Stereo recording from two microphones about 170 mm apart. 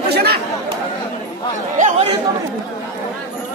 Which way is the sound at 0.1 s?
70° right (ahead or behind).